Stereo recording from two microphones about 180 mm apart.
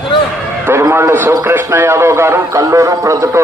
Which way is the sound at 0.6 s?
15° right (ahead or behind).